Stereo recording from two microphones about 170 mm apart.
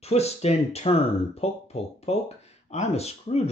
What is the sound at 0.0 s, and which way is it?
Speech, 40° left (ahead or behind).